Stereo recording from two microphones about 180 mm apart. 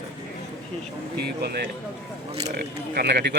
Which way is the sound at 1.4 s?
60° right (ahead or behind).